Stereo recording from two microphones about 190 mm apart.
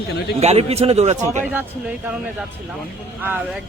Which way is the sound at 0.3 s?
35° right (ahead or behind).